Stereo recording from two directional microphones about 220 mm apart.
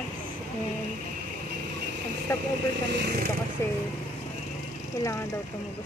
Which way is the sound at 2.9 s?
45° right (ahead or behind).